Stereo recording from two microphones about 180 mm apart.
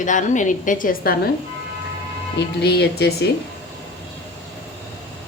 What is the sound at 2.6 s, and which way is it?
Speech, 65° left (ahead or behind).